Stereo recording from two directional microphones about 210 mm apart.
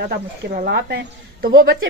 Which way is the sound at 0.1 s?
45° right (ahead or behind).